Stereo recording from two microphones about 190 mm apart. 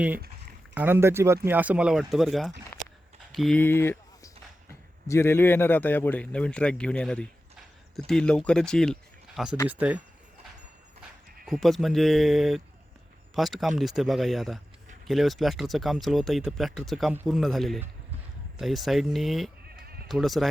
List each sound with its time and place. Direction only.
0.7 s speech: 10° right (ahead or behind)
2.7 s a sound: 15° left (ahead or behind)
3.3 s a man's voice: 5° left (ahead or behind)
11.4 s speech: centre (ahead or behind)
19.6 s bleat: 55° right (ahead or behind)
20.1 s speech: centre (ahead or behind)